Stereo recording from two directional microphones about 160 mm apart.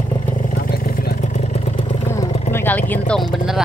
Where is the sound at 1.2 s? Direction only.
45° left (ahead or behind).